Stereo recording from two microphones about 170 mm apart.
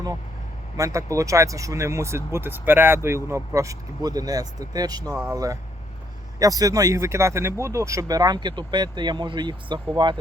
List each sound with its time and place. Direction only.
0.8 s speech: 20° right (ahead or behind)